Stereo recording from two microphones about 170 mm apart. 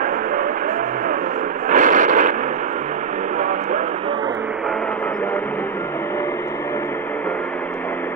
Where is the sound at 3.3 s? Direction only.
50° right (ahead or behind).